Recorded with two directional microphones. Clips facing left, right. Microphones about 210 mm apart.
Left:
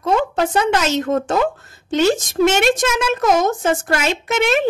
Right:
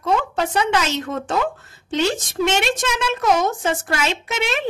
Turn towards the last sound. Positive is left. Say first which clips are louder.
# left 6 dB
turn(degrees=50)  # may be behind; listen again after turning